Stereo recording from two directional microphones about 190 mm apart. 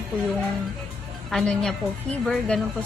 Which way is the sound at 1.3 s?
5° left (ahead or behind).